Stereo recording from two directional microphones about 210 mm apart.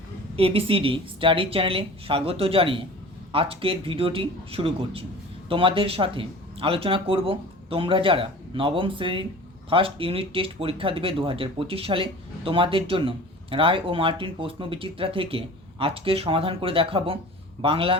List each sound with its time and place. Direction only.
0.3 s speech: 25° right (ahead or behind)